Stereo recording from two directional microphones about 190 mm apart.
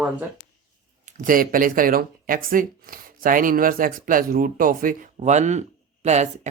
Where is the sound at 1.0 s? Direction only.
45° right (ahead or behind).